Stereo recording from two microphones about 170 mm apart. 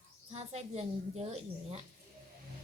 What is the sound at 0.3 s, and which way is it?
A woman's voice, 40° right (ahead or behind).